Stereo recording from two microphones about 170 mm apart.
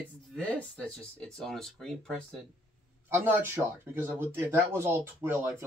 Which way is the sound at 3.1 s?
15° right (ahead or behind).